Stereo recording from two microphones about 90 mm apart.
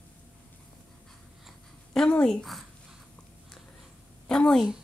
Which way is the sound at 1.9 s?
10° left (ahead or behind).